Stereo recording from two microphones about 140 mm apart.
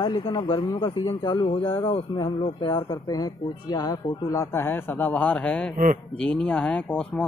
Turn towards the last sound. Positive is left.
turn(degrees=10)  # may be behind; listen again after turning